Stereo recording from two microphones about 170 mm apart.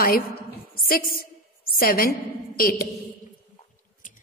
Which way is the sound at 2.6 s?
55° left (ahead or behind).